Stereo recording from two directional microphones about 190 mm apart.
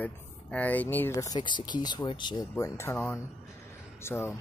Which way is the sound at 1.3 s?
25° left (ahead or behind).